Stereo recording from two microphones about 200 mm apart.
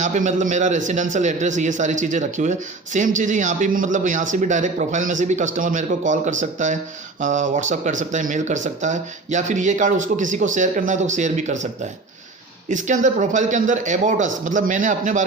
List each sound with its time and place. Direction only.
0.0 s a man's voice: 40° right (ahead or behind)
12.7 s a man's voice: 40° right (ahead or behind)